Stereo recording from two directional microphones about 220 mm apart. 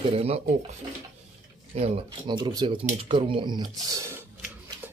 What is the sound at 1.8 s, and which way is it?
Speech, 25° right (ahead or behind).